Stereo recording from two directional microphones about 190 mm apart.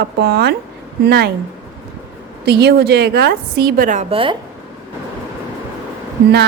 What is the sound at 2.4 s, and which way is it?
A woman's voice, 60° right (ahead or behind).